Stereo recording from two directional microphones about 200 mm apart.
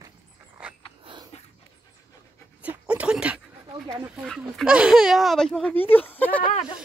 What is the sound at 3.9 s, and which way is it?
Speech, 10° right (ahead or behind).